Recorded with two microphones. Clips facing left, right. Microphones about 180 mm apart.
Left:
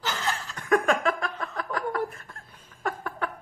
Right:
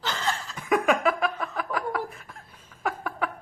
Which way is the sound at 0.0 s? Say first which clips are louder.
Right 1 dB; 5° left (ahead or behind).